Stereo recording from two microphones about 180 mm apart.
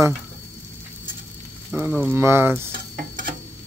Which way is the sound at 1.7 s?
10° right (ahead or behind).